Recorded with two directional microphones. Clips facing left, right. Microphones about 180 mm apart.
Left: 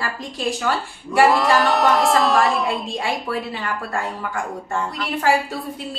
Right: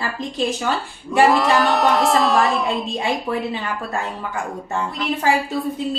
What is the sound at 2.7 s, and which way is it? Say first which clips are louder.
A woman's voice: right 2 dB; 20° right (ahead or behind).